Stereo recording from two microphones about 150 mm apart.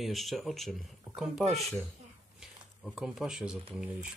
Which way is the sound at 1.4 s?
45° right (ahead or behind).